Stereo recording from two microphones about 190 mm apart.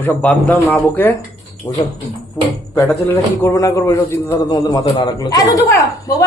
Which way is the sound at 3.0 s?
15° left (ahead or behind).